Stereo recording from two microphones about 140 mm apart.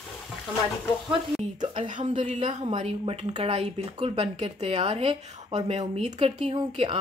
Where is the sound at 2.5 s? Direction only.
50° right (ahead or behind).